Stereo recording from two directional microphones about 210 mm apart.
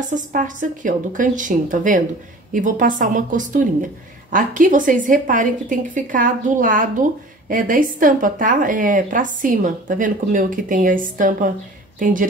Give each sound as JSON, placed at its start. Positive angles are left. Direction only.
{"t": 0.1, "sound": "a woman's voice", "side_deg": -40}